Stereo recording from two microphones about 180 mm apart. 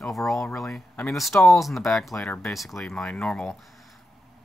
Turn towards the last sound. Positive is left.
turn(degrees=5)  # may be behind; listen again after turning